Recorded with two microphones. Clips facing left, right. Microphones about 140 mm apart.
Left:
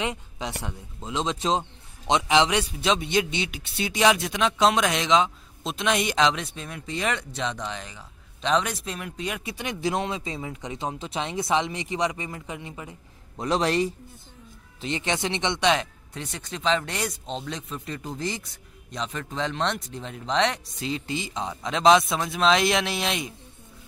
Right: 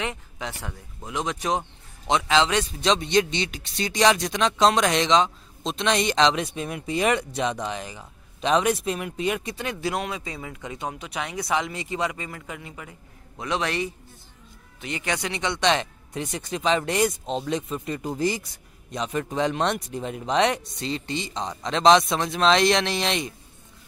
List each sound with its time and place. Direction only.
0.0 s a man's voice: 20° left (ahead or behind)
6.4 s speech: 10° right (ahead or behind)
9.4 s speech: 10° left (ahead or behind)
13.4 s a man's voice: 35° left (ahead or behind)
15.6 s speech: 5° left (ahead or behind)
16.1 s speech: 10° right (ahead or behind)
20.8 s speech: 5° left (ahead or behind)